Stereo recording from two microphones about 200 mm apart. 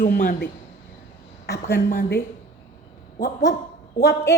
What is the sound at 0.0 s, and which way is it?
A woman's voice, 45° left (ahead or behind).